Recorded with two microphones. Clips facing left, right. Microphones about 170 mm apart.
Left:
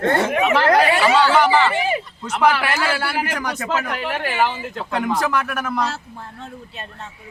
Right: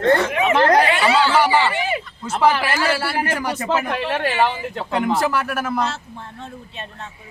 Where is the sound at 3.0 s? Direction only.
5° right (ahead or behind).